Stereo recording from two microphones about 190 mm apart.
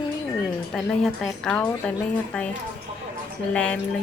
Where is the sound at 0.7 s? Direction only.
Centre (ahead or behind).